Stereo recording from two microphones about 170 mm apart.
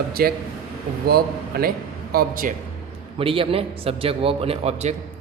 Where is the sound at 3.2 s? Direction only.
30° right (ahead or behind).